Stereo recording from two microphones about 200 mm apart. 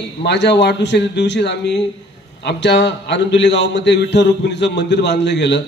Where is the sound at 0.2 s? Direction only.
60° left (ahead or behind).